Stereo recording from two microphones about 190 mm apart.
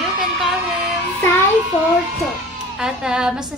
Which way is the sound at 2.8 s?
5° right (ahead or behind).